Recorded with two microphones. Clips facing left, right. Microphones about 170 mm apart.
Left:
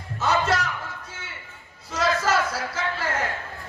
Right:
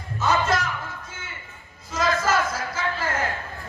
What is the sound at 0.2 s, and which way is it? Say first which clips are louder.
Music: even; 70° left (ahead or behind).